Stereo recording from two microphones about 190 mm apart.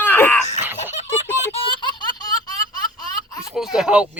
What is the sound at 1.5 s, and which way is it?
Baby laughter, 30° left (ahead or behind).